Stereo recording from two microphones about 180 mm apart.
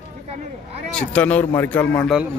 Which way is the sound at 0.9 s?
5° left (ahead or behind).